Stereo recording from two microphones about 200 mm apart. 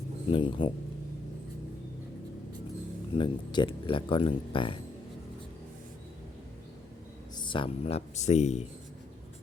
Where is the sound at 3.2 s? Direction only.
25° left (ahead or behind).